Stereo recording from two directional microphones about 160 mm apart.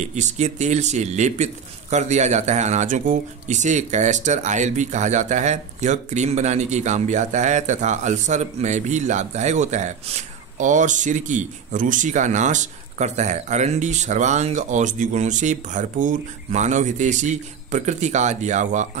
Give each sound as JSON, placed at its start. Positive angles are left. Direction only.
{"t": 0.0, "sound": "a man's voice", "side_deg": -45}